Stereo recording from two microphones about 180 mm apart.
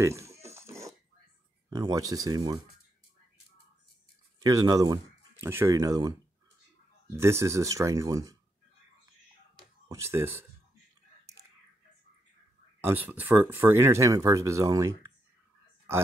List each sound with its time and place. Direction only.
0.0 s dog: 15° right (ahead or behind)
1.7 s speech: 20° right (ahead or behind)
4.4 s speech: 20° right (ahead or behind)
9.8 s speech: 15° right (ahead or behind)
12.8 s speech: 10° right (ahead or behind)